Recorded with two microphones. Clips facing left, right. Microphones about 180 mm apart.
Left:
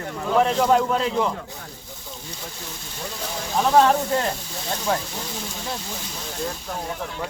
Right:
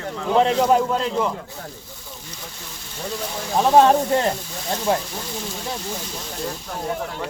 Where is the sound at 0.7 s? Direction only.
5° right (ahead or behind).